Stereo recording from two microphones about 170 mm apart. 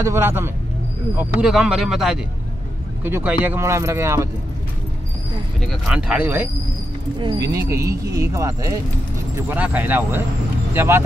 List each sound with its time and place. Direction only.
0.0 s speech: 15° right (ahead or behind)
5.7 s speech: centre (ahead or behind)
7.2 s speech: 25° right (ahead or behind)